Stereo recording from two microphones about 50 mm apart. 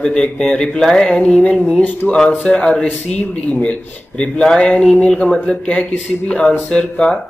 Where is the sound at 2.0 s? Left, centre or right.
Centre.